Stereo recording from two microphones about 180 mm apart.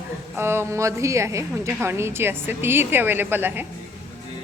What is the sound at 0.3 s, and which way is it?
A woman's voice, 15° right (ahead or behind).